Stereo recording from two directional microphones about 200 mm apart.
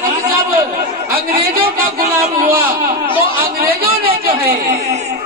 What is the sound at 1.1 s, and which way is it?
Speech, 45° right (ahead or behind).